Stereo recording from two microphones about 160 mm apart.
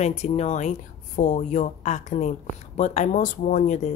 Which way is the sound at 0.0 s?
45° left (ahead or behind).